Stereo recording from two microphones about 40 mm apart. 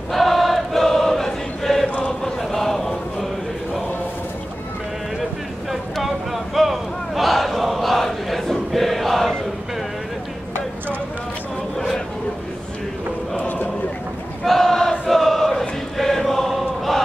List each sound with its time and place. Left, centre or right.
0.1 s choir: centre
1.9 s chant: left
2.2 s a sound: centre
6.0 s battle cry: centre
14.4 s crowd: centre
16.0 s chant: centre